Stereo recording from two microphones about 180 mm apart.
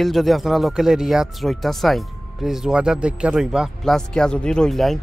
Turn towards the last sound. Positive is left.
turn(degrees=0)  # may be behind; listen again after turning